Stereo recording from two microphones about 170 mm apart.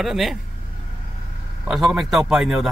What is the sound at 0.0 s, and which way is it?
Speech, centre (ahead or behind).